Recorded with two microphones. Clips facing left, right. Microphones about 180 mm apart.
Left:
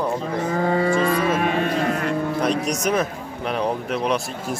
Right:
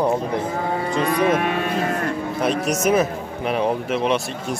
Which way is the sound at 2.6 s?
5° right (ahead or behind).